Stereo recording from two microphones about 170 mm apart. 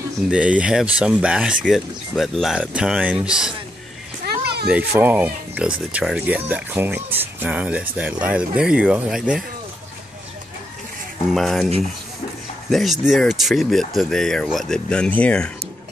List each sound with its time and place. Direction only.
0.3 s speech: 5° right (ahead or behind)
4.2 s a sound: 65° right (ahead or behind)
4.6 s speech: 10° right (ahead or behind)
11.3 s speech: centre (ahead or behind)